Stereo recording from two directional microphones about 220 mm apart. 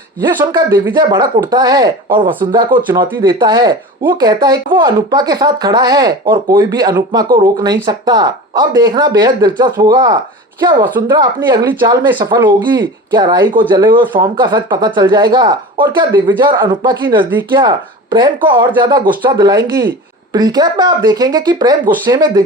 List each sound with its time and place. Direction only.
0.3 s speech: 15° right (ahead or behind)